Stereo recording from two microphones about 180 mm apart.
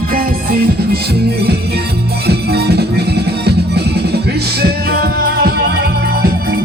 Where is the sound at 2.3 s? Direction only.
65° right (ahead or behind).